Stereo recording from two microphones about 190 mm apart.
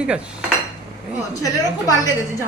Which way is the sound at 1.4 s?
20° left (ahead or behind).